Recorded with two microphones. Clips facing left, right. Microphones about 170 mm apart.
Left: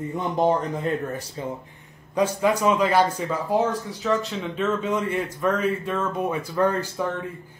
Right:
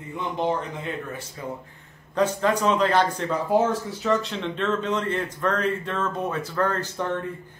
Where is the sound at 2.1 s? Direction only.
10° left (ahead or behind).